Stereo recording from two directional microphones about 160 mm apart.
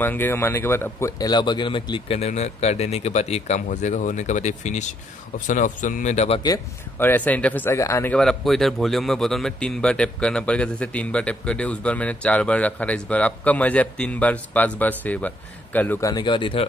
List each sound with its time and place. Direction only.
0.0 s speech: 10° left (ahead or behind)
1.3 s a man's voice: 30° left (ahead or behind)
6.4 s speech: 20° left (ahead or behind)
16.1 s speech: 30° left (ahead or behind)